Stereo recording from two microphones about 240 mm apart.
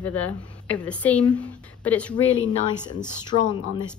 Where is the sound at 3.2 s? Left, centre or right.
Centre.